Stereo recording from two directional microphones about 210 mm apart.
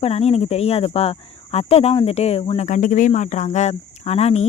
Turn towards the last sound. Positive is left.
turn(degrees=30)  # may be behind; listen again after turning